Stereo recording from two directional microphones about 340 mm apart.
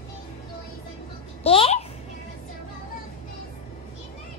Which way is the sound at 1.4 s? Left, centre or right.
Centre.